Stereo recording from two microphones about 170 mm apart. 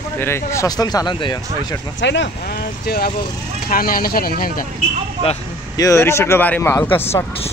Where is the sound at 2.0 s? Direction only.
90° left; by 4.6 s 60° left (ahead or behind).